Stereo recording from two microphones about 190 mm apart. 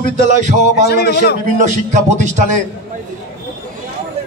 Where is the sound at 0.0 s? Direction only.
40° right (ahead or behind).